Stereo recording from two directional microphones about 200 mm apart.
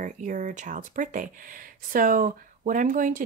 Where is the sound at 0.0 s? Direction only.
40° right (ahead or behind).